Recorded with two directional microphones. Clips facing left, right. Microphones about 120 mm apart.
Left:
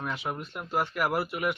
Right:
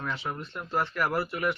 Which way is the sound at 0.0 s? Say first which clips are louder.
Left 1 dB; 15° left (ahead or behind).